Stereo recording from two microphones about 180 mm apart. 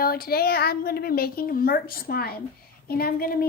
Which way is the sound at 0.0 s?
55° left (ahead or behind).